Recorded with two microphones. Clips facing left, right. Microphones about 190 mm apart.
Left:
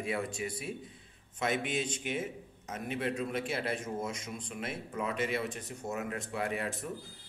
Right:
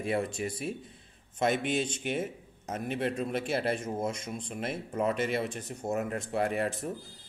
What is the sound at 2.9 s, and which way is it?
A man's voice, 45° right (ahead or behind).